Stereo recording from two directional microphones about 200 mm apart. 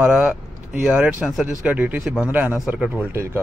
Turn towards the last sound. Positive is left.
turn(degrees=-10)  # may be behind; listen again after turning